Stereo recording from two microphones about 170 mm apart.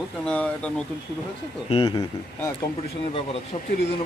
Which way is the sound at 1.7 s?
30° left (ahead or behind).